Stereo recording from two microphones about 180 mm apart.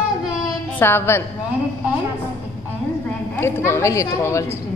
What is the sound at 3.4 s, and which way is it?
A woman's voice, 15° left (ahead or behind).